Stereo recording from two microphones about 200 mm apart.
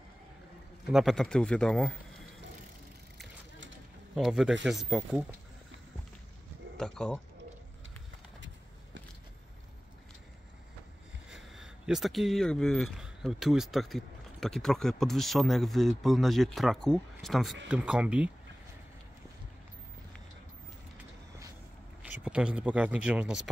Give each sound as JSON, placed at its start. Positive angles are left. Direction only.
{"t": 0.9, "sound": "speech", "side_deg": 0}
{"t": 3.5, "sound": "a sound", "side_deg": -70}
{"t": 4.1, "sound": "speech", "side_deg": 0}
{"t": 6.8, "sound": "speech", "side_deg": 5}
{"t": 11.2, "sound": "speech", "side_deg": -5}
{"t": 22.2, "sound": "speech", "side_deg": -5}